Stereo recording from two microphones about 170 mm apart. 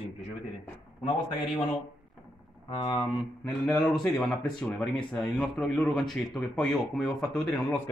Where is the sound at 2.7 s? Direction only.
30° left (ahead or behind).